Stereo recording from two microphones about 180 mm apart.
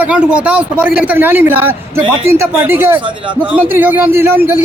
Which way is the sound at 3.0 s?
25° right (ahead or behind).